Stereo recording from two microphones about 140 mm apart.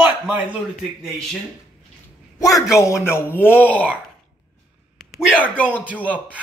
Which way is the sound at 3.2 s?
15° left (ahead or behind).